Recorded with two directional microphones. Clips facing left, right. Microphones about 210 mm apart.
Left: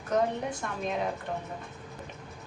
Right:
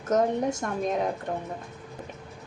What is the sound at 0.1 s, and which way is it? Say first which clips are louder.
Speech: right 4 dB; 45° right (ahead or behind).